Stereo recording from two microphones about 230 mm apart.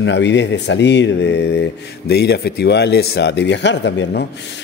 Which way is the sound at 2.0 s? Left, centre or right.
Left.